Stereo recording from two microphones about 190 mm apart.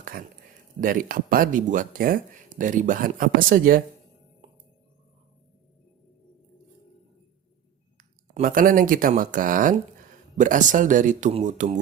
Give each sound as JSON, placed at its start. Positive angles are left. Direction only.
{"t": 0.0, "sound": "a sound", "side_deg": -50}
{"t": 0.8, "sound": "speech", "side_deg": -45}
{"t": 7.9, "sound": "speech", "side_deg": -45}